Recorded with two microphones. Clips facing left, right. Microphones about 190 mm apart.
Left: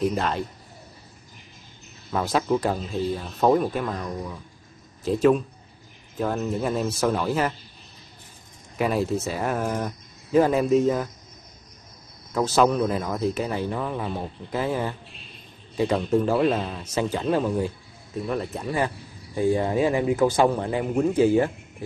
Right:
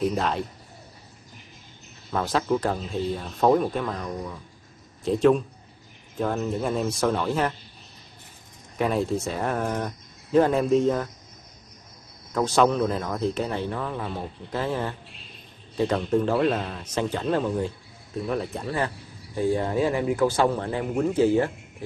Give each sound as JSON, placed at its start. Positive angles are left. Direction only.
{"t": 0.0, "sound": "speech", "side_deg": 0}
{"t": 2.1, "sound": "speech", "side_deg": 10}
{"t": 8.7, "sound": "speech", "side_deg": 5}
{"t": 12.4, "sound": "speech", "side_deg": 5}
{"t": 19.3, "sound": "speech", "side_deg": 15}